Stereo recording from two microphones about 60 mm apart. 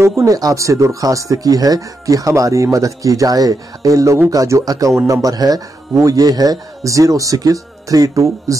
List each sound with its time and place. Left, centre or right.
0.0 s speech: right